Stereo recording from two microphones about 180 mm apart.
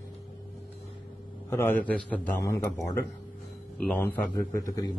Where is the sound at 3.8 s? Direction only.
10° left (ahead or behind).